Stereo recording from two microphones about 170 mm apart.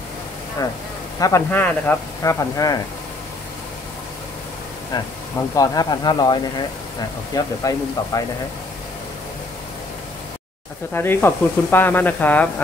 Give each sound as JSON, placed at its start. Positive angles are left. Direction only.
{"t": 1.2, "sound": "speech", "side_deg": 15}
{"t": 4.9, "sound": "speech", "side_deg": 25}
{"t": 10.9, "sound": "speech", "side_deg": 10}